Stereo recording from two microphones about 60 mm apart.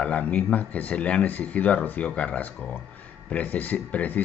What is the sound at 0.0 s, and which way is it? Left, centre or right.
Speech, left.